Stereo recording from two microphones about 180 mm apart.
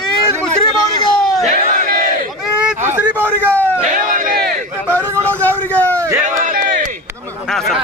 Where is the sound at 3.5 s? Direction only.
10° left (ahead or behind).